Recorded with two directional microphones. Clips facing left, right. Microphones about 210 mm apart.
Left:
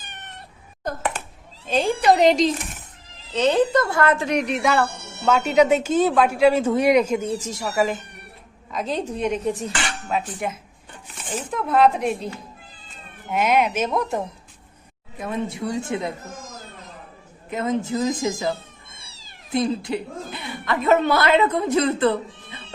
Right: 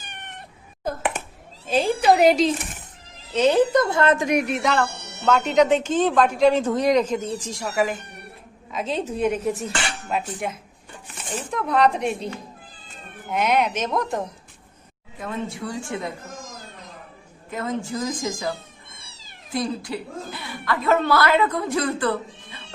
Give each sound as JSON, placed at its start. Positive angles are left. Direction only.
{"t": 0.0, "sound": "cat", "side_deg": -15}
{"t": 1.6, "sound": "a woman's voice", "side_deg": -5}
{"t": 13.3, "sound": "a woman's voice", "side_deg": 5}
{"t": 15.2, "sound": "a woman's voice", "side_deg": 20}
{"t": 17.5, "sound": "a woman's voice", "side_deg": 20}
{"t": 19.5, "sound": "a woman's voice", "side_deg": 25}